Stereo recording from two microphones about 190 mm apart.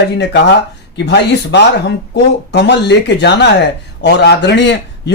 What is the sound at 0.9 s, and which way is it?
Speech, 65° left (ahead or behind).